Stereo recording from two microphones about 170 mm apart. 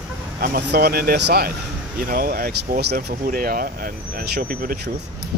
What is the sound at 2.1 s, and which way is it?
Speech, 60° right (ahead or behind).